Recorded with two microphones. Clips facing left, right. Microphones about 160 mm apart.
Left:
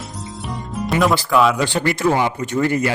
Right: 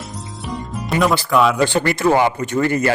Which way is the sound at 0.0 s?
Centre (ahead or behind).